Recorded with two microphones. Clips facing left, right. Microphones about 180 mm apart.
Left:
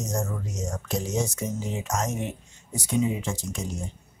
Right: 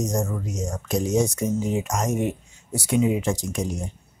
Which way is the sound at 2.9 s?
90° right.